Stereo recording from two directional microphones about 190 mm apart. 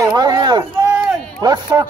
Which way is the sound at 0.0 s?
20° right (ahead or behind).